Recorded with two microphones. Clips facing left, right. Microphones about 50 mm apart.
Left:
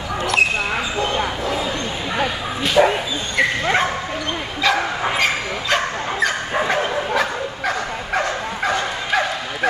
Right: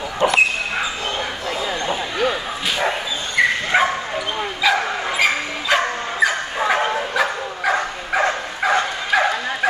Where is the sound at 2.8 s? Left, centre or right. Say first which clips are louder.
Left 8 dB; centre.